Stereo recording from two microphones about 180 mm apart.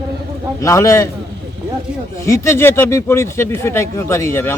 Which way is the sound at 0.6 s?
15° left (ahead or behind).